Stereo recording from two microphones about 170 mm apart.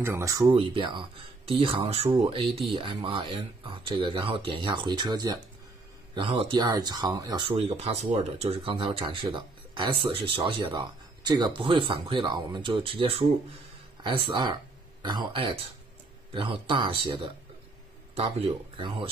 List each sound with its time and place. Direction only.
0.0 s speech: 15° right (ahead or behind)